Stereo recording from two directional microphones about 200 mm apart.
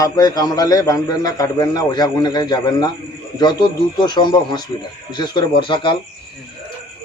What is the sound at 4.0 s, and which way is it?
A man's voice, 20° left (ahead or behind).